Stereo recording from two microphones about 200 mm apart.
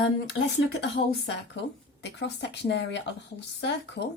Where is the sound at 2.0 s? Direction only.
60° left (ahead or behind).